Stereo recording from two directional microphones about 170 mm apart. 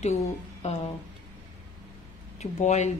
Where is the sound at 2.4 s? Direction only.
40° left (ahead or behind).